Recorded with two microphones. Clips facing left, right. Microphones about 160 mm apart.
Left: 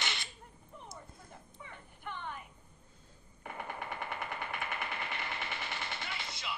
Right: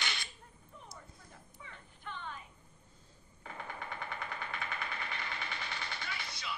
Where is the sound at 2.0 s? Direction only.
55° left (ahead or behind).